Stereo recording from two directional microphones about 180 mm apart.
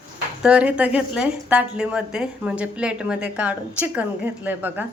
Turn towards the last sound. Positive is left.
turn(degrees=-10)  # may be behind; listen again after turning